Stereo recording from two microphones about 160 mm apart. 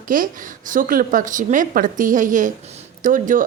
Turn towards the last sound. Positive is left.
turn(degrees=-55)  # may be behind; listen again after turning